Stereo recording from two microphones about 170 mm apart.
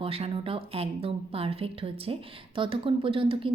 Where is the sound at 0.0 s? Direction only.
35° right (ahead or behind).